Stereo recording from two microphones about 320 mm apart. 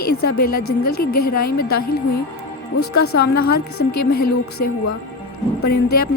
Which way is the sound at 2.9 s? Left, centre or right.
Left.